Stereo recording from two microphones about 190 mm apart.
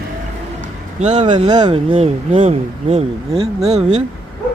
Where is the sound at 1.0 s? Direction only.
35° right (ahead or behind).